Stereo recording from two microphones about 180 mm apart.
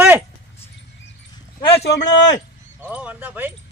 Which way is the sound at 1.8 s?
75° left (ahead or behind).